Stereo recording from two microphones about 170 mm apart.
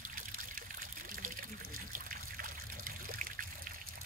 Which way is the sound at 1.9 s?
55° right (ahead or behind).